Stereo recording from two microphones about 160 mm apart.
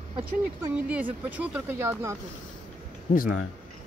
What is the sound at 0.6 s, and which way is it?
Speech, 10° right (ahead or behind).